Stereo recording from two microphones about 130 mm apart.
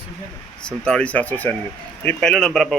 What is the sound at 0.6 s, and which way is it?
Speech, 5° left (ahead or behind).